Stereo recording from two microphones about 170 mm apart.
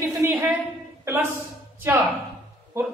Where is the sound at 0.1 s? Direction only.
15° right (ahead or behind).